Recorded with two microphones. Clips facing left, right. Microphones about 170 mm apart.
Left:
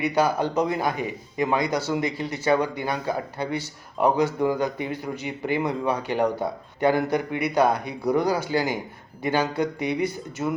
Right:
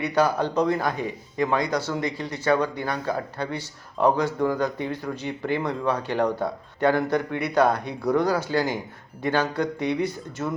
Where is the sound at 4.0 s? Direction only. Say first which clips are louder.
Even; 5° left (ahead or behind).